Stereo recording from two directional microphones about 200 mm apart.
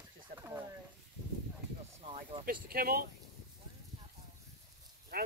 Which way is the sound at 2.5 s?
45° right (ahead or behind).